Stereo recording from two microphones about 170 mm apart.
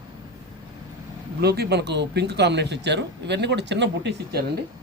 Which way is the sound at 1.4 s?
70° right (ahead or behind).